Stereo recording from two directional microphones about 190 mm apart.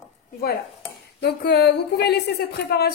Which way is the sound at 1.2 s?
60° left (ahead or behind).